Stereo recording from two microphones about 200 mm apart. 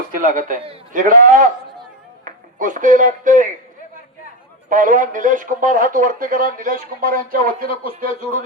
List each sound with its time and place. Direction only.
0.2 s a man's voice: 40° right (ahead or behind)
4.7 s a man's voice: 40° right (ahead or behind)